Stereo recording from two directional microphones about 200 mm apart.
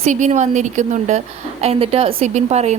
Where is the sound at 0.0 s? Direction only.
35° right (ahead or behind).